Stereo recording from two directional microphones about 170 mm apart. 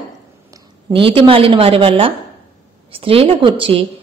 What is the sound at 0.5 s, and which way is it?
A woman's voice, 25° right (ahead or behind).